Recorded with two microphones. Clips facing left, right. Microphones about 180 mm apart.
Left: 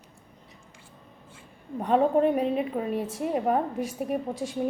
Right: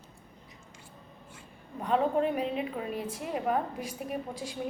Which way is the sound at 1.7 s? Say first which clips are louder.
Left 5 dB; 40° left (ahead or behind).